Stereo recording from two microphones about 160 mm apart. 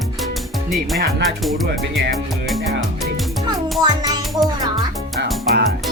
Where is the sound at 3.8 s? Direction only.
25° right (ahead or behind).